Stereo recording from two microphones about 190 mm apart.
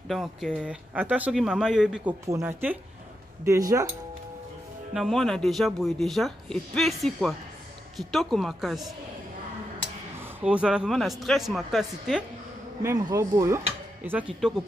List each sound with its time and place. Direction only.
0.1 s a man's voice: centre (ahead or behind); by 3.8 s 15° right (ahead or behind)
4.9 s speech: centre (ahead or behind)
10.2 s speech: 5° right (ahead or behind)
12.8 s a man's voice: 15° right (ahead or behind)